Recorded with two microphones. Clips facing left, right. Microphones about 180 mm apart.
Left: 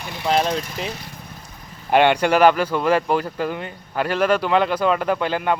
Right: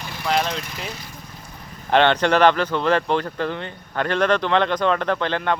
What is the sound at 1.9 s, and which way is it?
Speech, 10° left (ahead or behind).